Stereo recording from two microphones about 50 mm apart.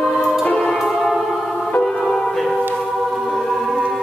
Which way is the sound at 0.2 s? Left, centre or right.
Centre.